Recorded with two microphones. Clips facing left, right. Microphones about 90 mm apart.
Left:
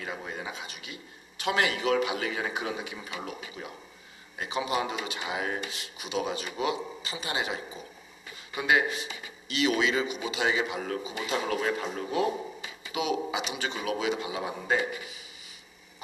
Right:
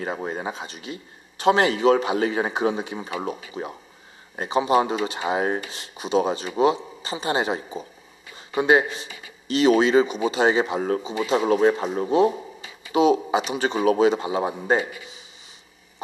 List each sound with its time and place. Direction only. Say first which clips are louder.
0.0 s speech: right 8 dB; 40° right (ahead or behind)
3.1 s speech: right 8 dB; 20° right (ahead or behind)